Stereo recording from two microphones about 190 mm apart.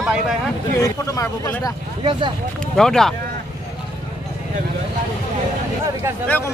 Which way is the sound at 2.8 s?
5° left (ahead or behind).